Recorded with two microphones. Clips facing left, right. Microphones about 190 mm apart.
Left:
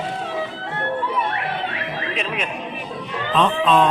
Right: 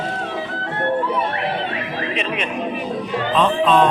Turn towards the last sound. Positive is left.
turn(degrees=0)  # may be behind; listen again after turning